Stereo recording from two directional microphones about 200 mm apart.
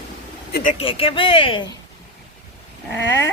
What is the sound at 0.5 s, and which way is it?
Speech, 40° left (ahead or behind).